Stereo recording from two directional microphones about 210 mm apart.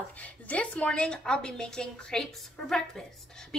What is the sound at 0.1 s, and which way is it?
A woman's voice, 5° left (ahead or behind).